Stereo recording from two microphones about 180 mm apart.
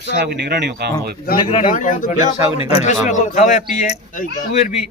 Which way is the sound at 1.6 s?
45° left (ahead or behind).